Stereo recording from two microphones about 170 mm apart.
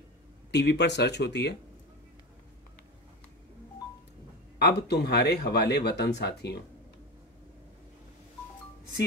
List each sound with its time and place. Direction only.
0.5 s speech: 80° left
4.6 s speech: 75° left (ahead or behind)